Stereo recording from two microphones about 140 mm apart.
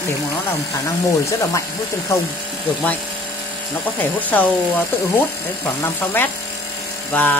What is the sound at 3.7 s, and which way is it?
Speech, 15° left (ahead or behind).